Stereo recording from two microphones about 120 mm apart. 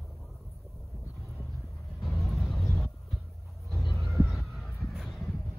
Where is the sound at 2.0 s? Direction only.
Centre (ahead or behind).